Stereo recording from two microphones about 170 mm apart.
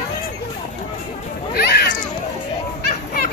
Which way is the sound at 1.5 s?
70° left (ahead or behind).